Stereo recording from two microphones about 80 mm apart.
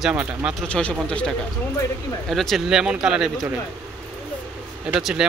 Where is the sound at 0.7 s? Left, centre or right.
Centre.